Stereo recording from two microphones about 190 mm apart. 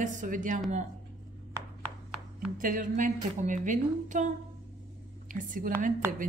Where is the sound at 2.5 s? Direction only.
45° right (ahead or behind).